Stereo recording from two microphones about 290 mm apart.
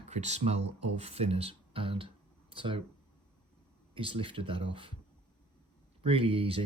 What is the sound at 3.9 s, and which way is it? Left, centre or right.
Speech, centre.